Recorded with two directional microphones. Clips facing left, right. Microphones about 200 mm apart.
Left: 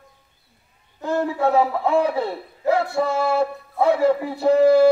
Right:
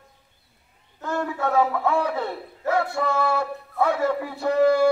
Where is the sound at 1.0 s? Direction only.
25° left (ahead or behind).